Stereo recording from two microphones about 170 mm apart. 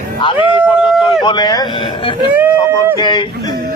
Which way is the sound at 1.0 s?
30° left (ahead or behind).